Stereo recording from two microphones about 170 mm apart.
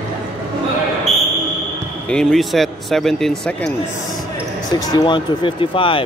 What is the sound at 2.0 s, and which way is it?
Speech, 5° left (ahead or behind).